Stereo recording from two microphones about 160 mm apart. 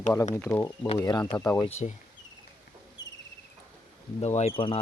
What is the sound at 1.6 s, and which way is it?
Speech, 40° left (ahead or behind).